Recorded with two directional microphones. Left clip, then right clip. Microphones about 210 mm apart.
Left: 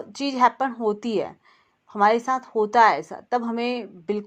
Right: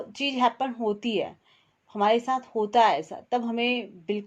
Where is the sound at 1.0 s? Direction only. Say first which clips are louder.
Left 2 dB; 5° right (ahead or behind).